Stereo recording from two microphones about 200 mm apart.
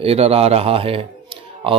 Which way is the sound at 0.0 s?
30° right (ahead or behind).